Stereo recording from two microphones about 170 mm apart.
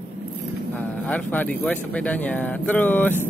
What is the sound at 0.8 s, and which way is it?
Speech, 10° left (ahead or behind).